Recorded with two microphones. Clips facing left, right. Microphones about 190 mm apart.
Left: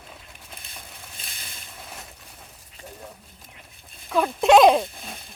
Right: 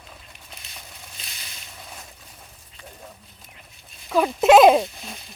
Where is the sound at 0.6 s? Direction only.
55° left (ahead or behind).